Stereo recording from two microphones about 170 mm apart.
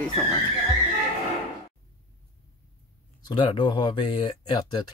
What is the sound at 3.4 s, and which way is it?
Speech, 30° left (ahead or behind).